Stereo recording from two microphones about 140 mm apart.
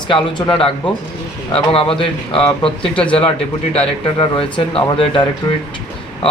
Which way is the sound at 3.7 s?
45° left (ahead or behind).